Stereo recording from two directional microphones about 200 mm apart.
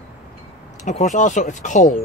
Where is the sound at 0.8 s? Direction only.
35° left (ahead or behind).